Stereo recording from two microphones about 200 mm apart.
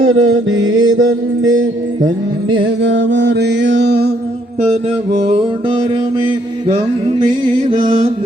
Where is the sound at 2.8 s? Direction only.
60° right (ahead or behind).